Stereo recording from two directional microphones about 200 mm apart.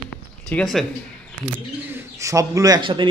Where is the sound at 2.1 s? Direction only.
15° right (ahead or behind).